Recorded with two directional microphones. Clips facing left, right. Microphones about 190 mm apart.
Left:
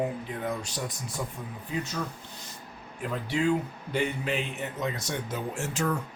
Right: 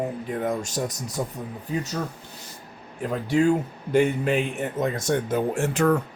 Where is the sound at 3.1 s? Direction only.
45° right (ahead or behind).